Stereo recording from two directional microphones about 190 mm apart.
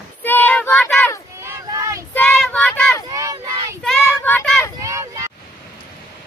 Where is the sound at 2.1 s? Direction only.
5° left (ahead or behind).